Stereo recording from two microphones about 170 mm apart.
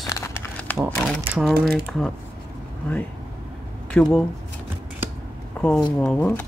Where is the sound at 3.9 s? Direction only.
5° left (ahead or behind).